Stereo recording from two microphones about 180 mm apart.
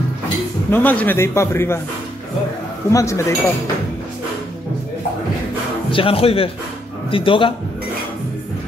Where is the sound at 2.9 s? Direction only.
15° left (ahead or behind).